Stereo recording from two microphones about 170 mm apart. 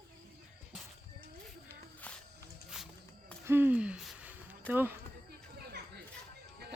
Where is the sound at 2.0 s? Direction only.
10° left (ahead or behind).